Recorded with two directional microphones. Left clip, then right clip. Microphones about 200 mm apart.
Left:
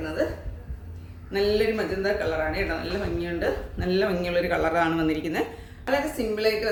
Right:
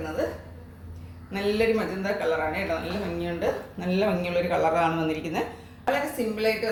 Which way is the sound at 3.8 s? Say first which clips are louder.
Left 2 dB; 30° left (ahead or behind).